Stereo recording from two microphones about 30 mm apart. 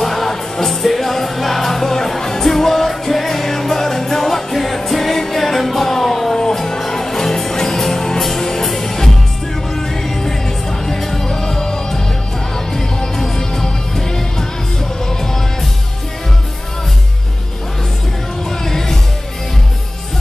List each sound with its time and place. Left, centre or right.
0.0 s music: centre
6.3 s music: centre
18.5 s music: centre